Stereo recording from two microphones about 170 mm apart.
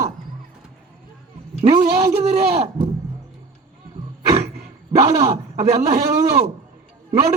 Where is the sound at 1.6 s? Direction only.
40° right (ahead or behind).